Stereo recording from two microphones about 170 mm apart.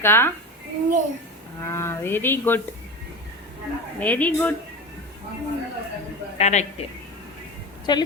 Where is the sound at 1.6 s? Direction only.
15° left (ahead or behind).